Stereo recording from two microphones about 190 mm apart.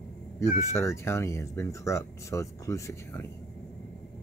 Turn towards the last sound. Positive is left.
turn(degrees=15)  # may be behind; listen again after turning